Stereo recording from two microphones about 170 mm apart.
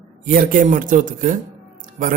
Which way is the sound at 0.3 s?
55° right (ahead or behind).